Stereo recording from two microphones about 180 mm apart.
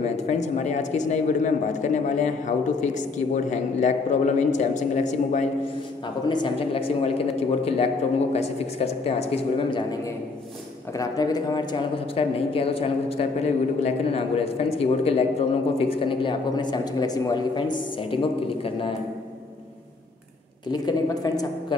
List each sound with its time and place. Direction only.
0.0 s a man's voice: 40° left (ahead or behind)
6.2 s a man's voice: 25° left (ahead or behind)
11.0 s a woman's voice: 20° left (ahead or behind)
20.7 s a woman's voice: 20° left (ahead or behind)